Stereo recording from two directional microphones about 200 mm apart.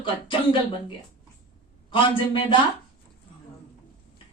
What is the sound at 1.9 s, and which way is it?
Speech, 25° left (ahead or behind).